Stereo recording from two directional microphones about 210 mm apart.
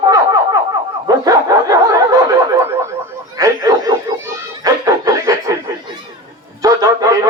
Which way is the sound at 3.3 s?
15° right (ahead or behind).